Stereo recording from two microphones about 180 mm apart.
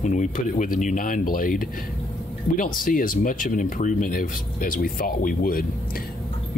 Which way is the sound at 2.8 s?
50° left (ahead or behind).